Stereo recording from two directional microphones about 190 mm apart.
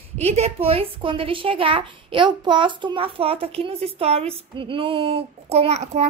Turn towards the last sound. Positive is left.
turn(degrees=-35)  # may be behind; listen again after turning